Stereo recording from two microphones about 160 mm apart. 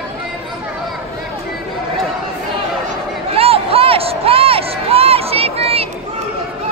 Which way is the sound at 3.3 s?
35° right (ahead or behind).